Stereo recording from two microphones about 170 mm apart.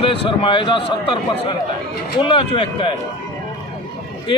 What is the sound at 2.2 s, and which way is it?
Speech, 30° left (ahead or behind).